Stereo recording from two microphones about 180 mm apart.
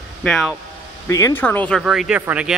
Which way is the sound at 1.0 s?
15° left (ahead or behind).